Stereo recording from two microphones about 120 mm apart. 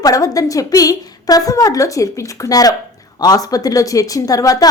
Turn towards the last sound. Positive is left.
turn(degrees=30)  # may be behind; listen again after turning